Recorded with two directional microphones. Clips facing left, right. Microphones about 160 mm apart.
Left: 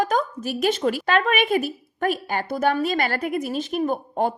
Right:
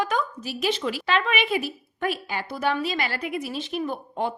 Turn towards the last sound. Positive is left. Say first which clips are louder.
# left 5 dB
turn(degrees=45)  # may be behind; listen again after turning